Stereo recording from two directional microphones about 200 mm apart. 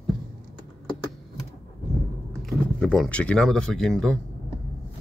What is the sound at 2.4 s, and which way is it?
Speech, centre (ahead or behind).